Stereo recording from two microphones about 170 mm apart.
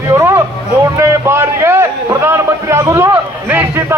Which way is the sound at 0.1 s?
15° right (ahead or behind).